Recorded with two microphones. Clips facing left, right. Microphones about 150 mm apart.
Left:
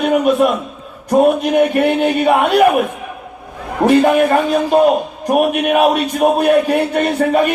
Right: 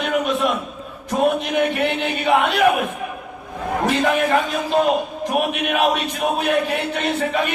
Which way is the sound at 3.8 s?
50° left (ahead or behind).